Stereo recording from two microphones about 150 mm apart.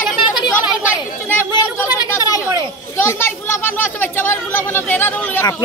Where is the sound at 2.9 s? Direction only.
15° left (ahead or behind).